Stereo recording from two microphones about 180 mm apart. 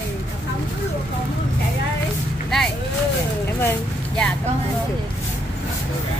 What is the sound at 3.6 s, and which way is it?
Vehicle, 10° left (ahead or behind).